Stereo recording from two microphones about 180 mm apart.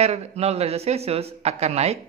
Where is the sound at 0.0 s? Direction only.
35° right (ahead or behind).